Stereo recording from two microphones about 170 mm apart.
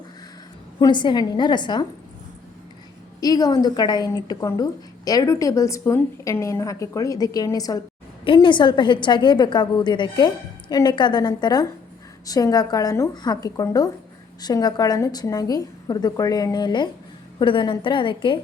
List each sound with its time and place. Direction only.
0.8 s a woman's voice: 25° left (ahead or behind)
3.2 s a woman's voice: 20° left (ahead or behind)